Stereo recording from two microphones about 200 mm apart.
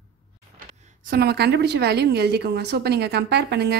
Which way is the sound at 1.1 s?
55° right (ahead or behind).